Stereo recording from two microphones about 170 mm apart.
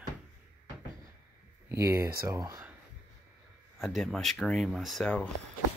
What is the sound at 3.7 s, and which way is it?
Speech, centre (ahead or behind).